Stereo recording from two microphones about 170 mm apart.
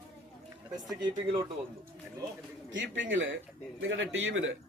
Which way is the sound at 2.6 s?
90° right.